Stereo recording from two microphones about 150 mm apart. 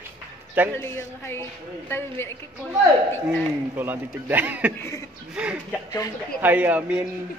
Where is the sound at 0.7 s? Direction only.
15° left (ahead or behind).